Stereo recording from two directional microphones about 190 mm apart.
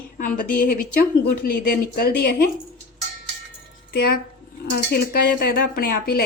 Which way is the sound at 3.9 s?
55° left (ahead or behind).